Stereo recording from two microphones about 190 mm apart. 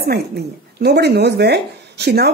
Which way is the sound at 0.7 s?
60° right (ahead or behind).